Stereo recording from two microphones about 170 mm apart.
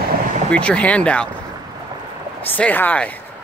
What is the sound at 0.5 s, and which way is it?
Speech, 5° left (ahead or behind).